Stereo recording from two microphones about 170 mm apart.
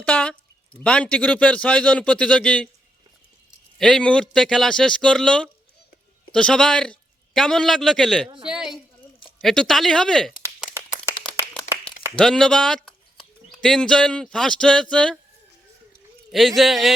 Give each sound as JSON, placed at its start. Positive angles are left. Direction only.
{"t": 0.0, "sound": "a sound", "side_deg": 5}
{"t": 0.9, "sound": "a man's voice", "side_deg": 5}
{"t": 3.8, "sound": "a man's voice", "side_deg": 5}
{"t": 8.4, "sound": "a sound", "side_deg": -5}
{"t": 9.4, "sound": "speech", "side_deg": 0}
{"t": 12.1, "sound": "speech", "side_deg": 5}
{"t": 16.3, "sound": "speech", "side_deg": 0}